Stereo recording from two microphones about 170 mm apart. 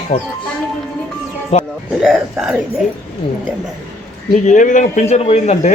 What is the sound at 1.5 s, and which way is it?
Speech, 40° left (ahead or behind).